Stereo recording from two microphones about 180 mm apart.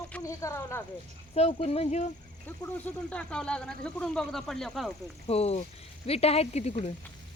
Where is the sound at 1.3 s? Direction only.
35° left (ahead or behind).